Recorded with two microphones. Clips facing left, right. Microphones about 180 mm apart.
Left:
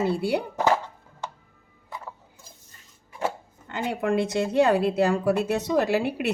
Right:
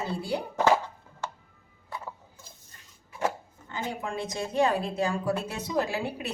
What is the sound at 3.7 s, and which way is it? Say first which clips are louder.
A woman's voice: left 8 dB; 70° left (ahead or behind).